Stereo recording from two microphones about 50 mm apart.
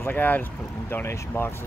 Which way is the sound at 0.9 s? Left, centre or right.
Left.